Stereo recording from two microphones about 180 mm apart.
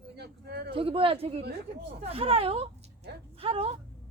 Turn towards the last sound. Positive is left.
turn(degrees=-30)  # may be behind; listen again after turning